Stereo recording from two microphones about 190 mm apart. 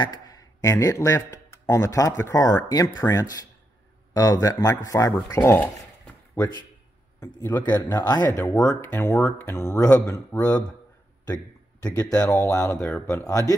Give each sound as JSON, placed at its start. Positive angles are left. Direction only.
{"t": 0.0, "sound": "a man's voice", "side_deg": 20}